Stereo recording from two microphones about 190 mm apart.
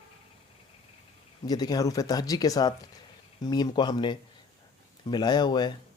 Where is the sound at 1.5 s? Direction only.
20° left (ahead or behind).